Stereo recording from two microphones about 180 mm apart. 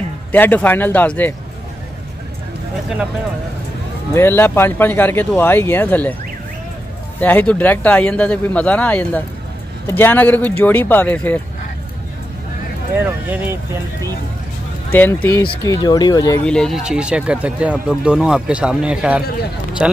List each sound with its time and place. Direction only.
0.3 s speech: 10° left (ahead or behind)
4.1 s speech: 10° left (ahead or behind)
7.2 s speech: 10° left (ahead or behind)
13.3 s speech: 10° right (ahead or behind)
14.9 s speech: 10° left (ahead or behind)
15.4 s speech: 25° left (ahead or behind)
16.4 s speech: 5° left (ahead or behind)